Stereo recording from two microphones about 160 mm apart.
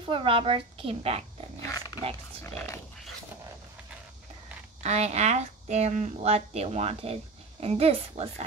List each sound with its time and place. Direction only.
0.0 s speech: 35° right (ahead or behind)
2.4 s dog: 20° left (ahead or behind)
4.8 s a woman's voice: 45° right (ahead or behind)